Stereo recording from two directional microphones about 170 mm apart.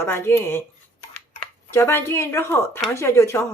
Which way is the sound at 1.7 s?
15° left (ahead or behind).